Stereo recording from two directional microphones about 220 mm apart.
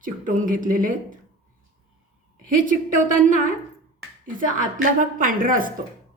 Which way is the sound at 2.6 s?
35° right (ahead or behind).